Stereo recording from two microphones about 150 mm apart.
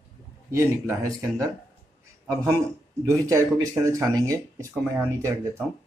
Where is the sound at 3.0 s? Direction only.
20° right (ahead or behind).